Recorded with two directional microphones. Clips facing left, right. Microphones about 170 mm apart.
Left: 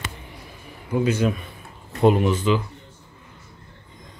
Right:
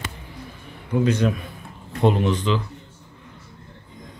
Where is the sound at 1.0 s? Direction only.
5° left (ahead or behind).